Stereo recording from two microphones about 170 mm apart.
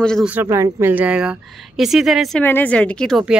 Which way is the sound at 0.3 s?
15° right (ahead or behind).